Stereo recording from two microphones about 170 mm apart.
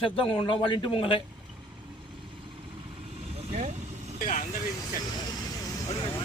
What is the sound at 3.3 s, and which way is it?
Vehicle, 40° right (ahead or behind).